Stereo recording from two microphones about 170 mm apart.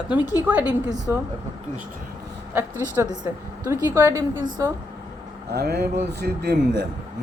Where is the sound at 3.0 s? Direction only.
15° right (ahead or behind).